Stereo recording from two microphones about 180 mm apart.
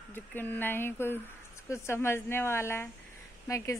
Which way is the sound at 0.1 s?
10° left (ahead or behind).